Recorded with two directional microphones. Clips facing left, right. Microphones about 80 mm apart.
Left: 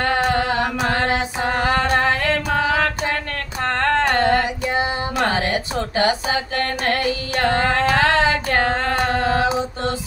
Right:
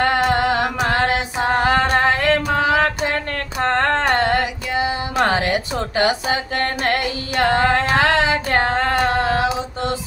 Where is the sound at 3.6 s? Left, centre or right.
Right.